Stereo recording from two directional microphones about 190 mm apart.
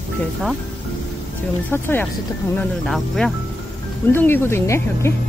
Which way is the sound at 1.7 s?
10° left (ahead or behind).